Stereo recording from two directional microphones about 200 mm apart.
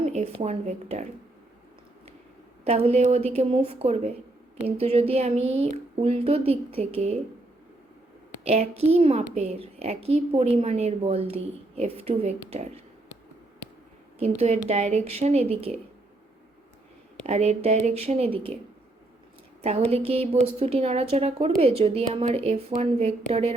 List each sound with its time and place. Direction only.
0.0 s speech: 30° right (ahead or behind)
2.6 s a woman's voice: 30° right (ahead or behind)
8.4 s a woman's voice: 30° right (ahead or behind)
14.2 s a woman's voice: 30° right (ahead or behind)
17.2 s a woman's voice: 35° right (ahead or behind)
19.6 s a woman's voice: 30° right (ahead or behind)